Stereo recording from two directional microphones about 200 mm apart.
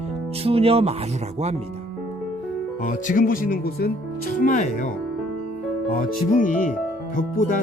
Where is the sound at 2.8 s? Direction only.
40° left (ahead or behind).